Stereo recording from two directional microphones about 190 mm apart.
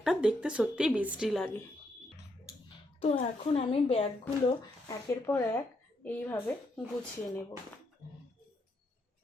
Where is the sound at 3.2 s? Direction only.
30° left (ahead or behind).